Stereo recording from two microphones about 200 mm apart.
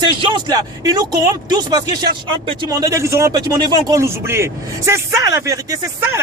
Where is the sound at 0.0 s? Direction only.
25° right (ahead or behind).